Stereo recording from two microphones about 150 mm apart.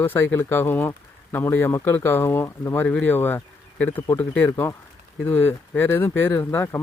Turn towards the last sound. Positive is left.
turn(degrees=15)  # may be behind; listen again after turning